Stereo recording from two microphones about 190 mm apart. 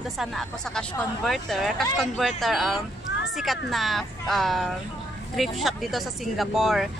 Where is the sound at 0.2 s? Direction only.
Centre (ahead or behind).